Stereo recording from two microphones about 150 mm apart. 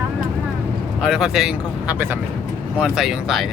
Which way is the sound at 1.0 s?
5° right (ahead or behind).